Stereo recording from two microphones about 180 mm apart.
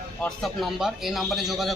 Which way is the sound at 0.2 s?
Centre (ahead or behind).